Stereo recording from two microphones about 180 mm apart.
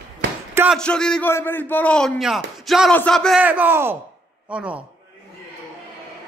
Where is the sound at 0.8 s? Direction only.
5° left (ahead or behind).